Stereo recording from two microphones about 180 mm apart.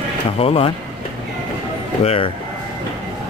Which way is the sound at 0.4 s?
30° left (ahead or behind).